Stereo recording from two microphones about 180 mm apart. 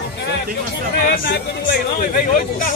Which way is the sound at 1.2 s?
65° left (ahead or behind).